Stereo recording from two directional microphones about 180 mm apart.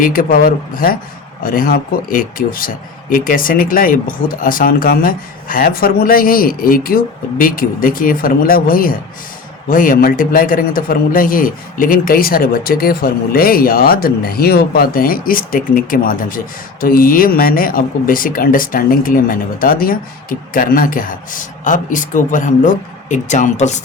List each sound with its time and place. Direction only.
0.0 s speech: 50° left (ahead or behind)